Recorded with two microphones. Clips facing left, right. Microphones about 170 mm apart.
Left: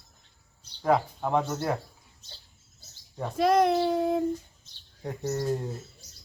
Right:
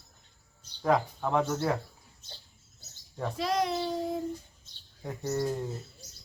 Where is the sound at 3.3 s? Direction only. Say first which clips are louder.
Left 8 dB; 55° left (ahead or behind).